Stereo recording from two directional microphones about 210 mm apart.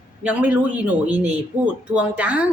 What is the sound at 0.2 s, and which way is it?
Speech, 5° right (ahead or behind).